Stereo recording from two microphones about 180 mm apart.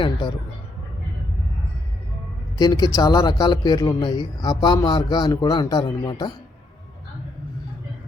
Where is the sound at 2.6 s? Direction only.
20° left (ahead or behind).